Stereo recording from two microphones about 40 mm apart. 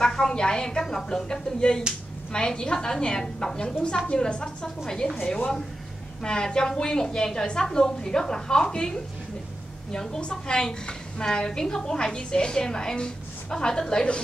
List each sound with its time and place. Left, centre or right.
0.0 s a woman's voice: centre
10.3 s a woman's voice: centre